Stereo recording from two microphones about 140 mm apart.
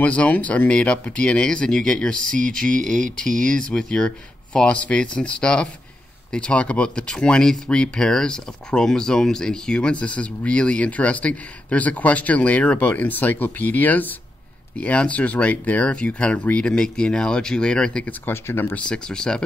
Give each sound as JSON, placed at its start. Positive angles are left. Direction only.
{"t": 0.0, "sound": "speech", "side_deg": 10}
{"t": 2.1, "sound": "speech", "side_deg": -70}
{"t": 3.0, "sound": "speech", "side_deg": 5}